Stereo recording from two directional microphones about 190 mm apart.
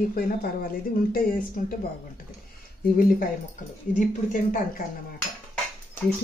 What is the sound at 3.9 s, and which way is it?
Speech, 45° left (ahead or behind).